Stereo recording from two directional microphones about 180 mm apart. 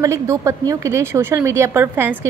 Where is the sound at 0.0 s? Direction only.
15° right (ahead or behind).